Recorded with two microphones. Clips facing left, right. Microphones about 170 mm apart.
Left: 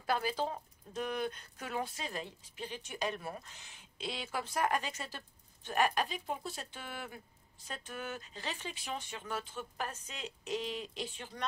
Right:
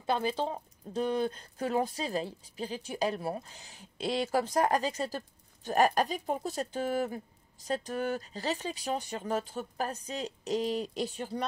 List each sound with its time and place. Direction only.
0.0 s speech: 25° right (ahead or behind)